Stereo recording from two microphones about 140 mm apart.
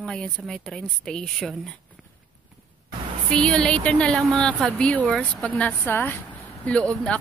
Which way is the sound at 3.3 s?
5° left (ahead or behind).